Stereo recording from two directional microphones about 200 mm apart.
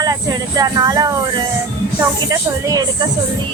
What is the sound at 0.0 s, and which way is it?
A woman's voice, 20° right (ahead or behind).